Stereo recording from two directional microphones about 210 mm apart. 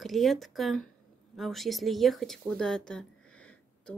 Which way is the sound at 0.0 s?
Centre (ahead or behind).